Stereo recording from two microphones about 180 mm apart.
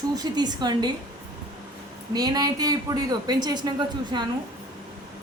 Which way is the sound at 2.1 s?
20° right (ahead or behind).